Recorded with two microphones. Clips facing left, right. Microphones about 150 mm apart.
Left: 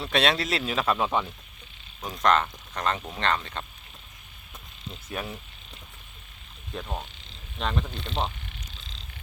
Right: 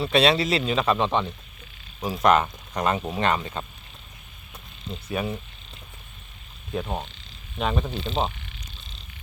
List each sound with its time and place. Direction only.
0.0 s speech: centre (ahead or behind)
2.0 s speech: 10° right (ahead or behind)
5.0 s speech: centre (ahead or behind)
6.8 s speech: 20° right (ahead or behind)
7.6 s speech: 5° right (ahead or behind)